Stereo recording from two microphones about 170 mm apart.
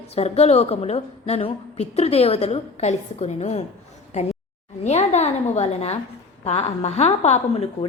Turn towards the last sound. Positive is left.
turn(degrees=40)  # may be behind; listen again after turning